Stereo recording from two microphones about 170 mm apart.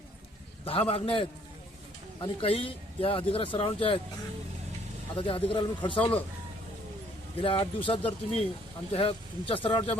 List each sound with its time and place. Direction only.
0.6 s speech: 35° left (ahead or behind)
5.1 s speech: 30° left (ahead or behind)
7.3 s speech: 30° left (ahead or behind)